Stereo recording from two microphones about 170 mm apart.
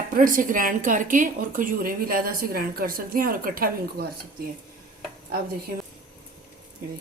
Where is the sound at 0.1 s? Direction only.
55° right (ahead or behind).